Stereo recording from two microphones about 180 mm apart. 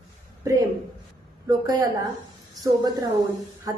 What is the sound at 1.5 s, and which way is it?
Speech, 20° right (ahead or behind).